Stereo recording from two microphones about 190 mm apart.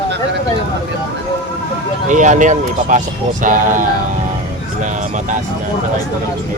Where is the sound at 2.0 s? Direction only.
40° right (ahead or behind).